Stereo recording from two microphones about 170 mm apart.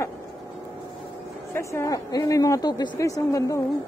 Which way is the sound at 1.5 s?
15° left (ahead or behind).